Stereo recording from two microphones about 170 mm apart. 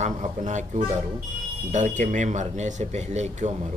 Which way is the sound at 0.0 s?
45° right (ahead or behind).